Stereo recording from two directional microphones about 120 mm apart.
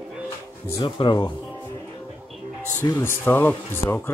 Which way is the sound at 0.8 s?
45° left (ahead or behind).